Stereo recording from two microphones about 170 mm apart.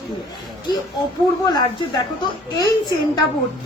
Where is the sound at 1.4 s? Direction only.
25° left (ahead or behind).